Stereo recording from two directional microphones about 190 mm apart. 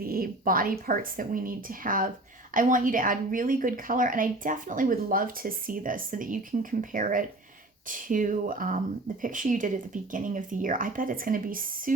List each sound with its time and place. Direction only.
0.0 s a woman's voice: 50° right (ahead or behind)